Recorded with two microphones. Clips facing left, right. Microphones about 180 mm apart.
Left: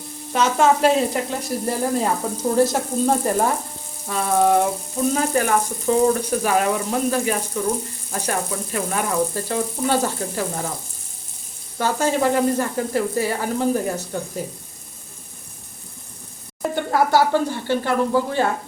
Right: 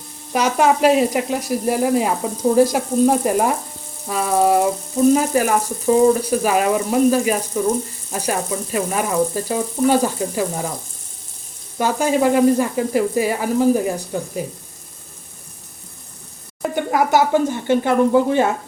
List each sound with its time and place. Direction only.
0.3 s speech: 10° right (ahead or behind)
11.8 s speech: 15° right (ahead or behind)
16.6 s speech: 15° right (ahead or behind)